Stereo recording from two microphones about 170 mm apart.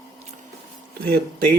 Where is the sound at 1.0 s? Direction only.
60° right (ahead or behind).